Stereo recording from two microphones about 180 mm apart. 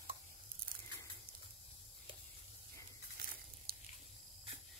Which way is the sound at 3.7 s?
55° right (ahead or behind).